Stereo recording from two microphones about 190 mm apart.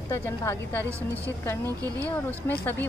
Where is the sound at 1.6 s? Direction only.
20° right (ahead or behind).